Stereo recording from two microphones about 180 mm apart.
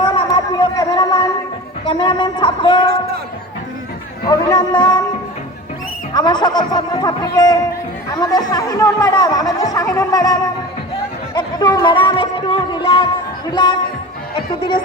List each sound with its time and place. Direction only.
0.0 s a sound: 25° left (ahead or behind)
1.8 s speech: 25° left (ahead or behind)
4.3 s speech: 20° left (ahead or behind)
6.1 s speech: 25° left (ahead or behind)